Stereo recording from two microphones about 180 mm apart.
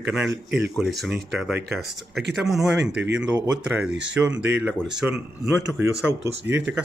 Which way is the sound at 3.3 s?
5° right (ahead or behind).